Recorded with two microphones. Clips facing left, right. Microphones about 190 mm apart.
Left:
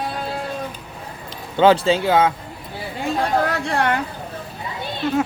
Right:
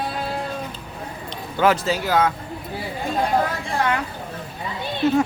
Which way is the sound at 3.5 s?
70° left (ahead or behind).